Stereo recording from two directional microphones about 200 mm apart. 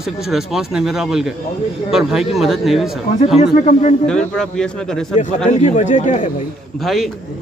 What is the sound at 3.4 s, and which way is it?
Speech, 35° left (ahead or behind).